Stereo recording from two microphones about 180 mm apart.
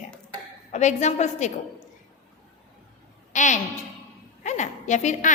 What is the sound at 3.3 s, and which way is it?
A woman's voice, 45° left (ahead or behind).